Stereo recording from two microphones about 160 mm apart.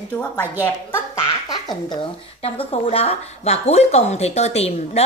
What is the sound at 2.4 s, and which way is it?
Speech, 35° left (ahead or behind).